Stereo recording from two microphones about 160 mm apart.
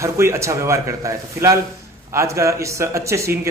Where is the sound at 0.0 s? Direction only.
20° right (ahead or behind).